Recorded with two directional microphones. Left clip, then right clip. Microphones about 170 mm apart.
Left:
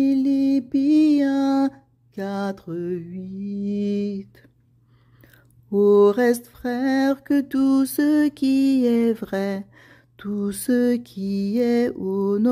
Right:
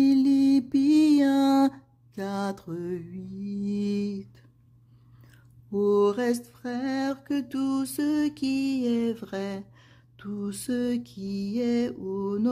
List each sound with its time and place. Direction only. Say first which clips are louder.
0.0 s mantra: left 1 dB; centre (ahead or behind)
5.3 s mantra: left 8 dB; 20° left (ahead or behind)
9.8 s a sound: left 7 dB; 30° left (ahead or behind)
11.5 s mantra: left 7 dB; 25° left (ahead or behind)